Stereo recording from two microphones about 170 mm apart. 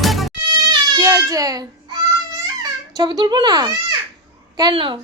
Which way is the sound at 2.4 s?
25° right (ahead or behind).